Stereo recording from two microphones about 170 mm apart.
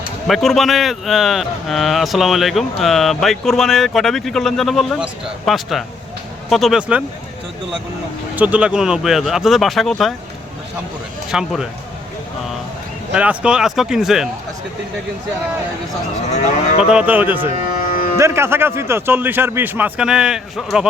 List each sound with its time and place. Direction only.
0.3 s a man's voice: centre (ahead or behind)
8.4 s a man's voice: 10° right (ahead or behind)
11.3 s a man's voice: 5° right (ahead or behind)
13.1 s a man's voice: 5° right (ahead or behind)
16.8 s a man's voice: 5° right (ahead or behind)
17.7 s music: 55° left (ahead or behind)
18.2 s a man's voice: 15° right (ahead or behind)